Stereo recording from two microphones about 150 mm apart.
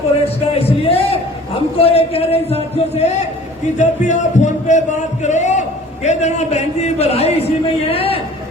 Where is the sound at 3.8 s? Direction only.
55° left (ahead or behind).